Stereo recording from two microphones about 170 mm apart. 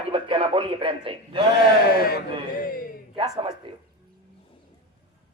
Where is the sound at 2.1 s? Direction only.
55° left (ahead or behind).